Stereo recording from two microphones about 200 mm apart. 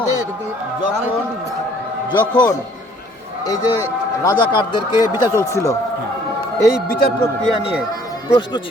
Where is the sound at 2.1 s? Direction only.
20° left (ahead or behind).